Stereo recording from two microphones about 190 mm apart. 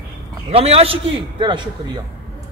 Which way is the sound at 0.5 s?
30° right (ahead or behind).